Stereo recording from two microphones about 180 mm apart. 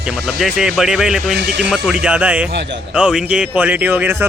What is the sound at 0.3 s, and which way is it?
Speech, centre (ahead or behind).